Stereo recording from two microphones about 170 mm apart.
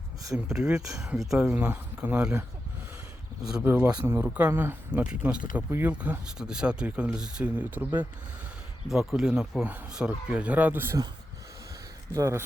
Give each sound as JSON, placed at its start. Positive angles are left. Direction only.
{"t": 0.4, "sound": "speech", "side_deg": -5}
{"t": 3.4, "sound": "speech", "side_deg": -10}
{"t": 8.9, "sound": "speech", "side_deg": 0}
{"t": 12.1, "sound": "speech", "side_deg": -15}